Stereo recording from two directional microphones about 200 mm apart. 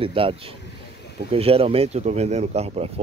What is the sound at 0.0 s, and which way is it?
Speech, 25° right (ahead or behind).